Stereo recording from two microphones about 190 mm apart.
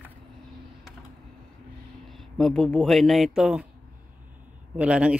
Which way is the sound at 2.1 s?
Centre (ahead or behind).